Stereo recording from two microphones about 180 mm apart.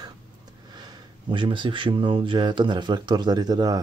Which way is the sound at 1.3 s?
25° right (ahead or behind).